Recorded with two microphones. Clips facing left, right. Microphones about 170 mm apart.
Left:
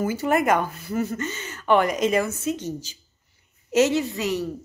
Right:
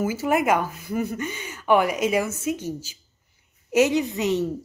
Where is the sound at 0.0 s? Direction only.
5° right (ahead or behind).